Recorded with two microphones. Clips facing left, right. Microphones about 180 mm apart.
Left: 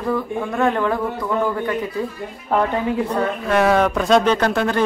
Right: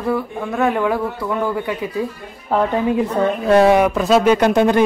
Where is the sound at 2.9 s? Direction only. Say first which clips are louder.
Right 3 dB; 25° right (ahead or behind).